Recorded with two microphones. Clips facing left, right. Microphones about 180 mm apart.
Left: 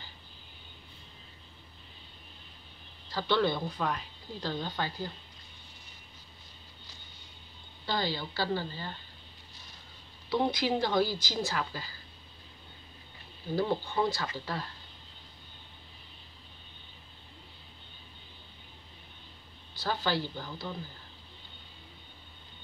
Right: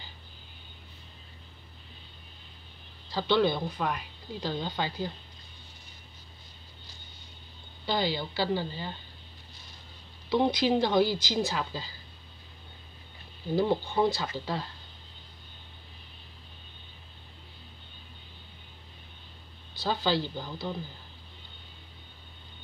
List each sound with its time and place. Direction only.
3.1 s speech: 15° right (ahead or behind)
7.8 s speech: 15° right (ahead or behind)
10.3 s speech: 15° right (ahead or behind)
13.6 s speech: 20° right (ahead or behind)
19.8 s speech: 15° right (ahead or behind)